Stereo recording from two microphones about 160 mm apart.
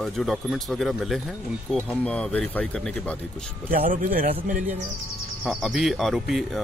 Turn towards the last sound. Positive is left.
turn(degrees=0)  # may be behind; listen again after turning